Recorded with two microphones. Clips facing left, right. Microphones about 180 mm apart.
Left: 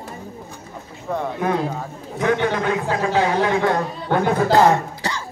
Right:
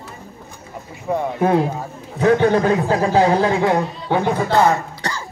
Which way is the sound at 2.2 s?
35° right (ahead or behind).